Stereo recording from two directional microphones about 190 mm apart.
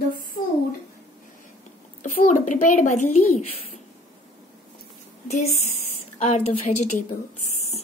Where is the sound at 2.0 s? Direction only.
45° left (ahead or behind).